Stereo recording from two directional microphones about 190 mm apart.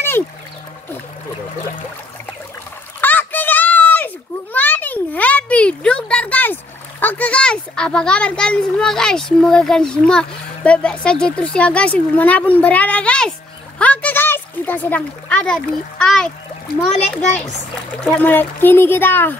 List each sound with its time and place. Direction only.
3.0 s children playing: 10° left (ahead or behind)
7.0 s a child's voice: 10° left (ahead or behind)
13.7 s a sound: 10° left (ahead or behind)
18.0 s speech: 5° left (ahead or behind)